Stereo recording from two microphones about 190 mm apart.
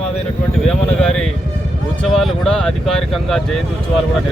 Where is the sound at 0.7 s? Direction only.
5° left (ahead or behind).